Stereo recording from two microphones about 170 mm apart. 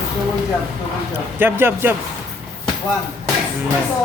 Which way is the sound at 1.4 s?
15° right (ahead or behind).